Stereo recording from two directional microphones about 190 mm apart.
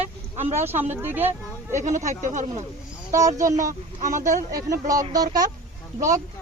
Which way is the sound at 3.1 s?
15° right (ahead or behind).